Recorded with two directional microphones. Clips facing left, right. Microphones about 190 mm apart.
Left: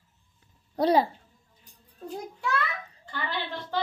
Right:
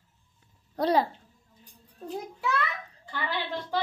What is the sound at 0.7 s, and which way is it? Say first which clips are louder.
Speech: left 2 dB; 10° left (ahead or behind).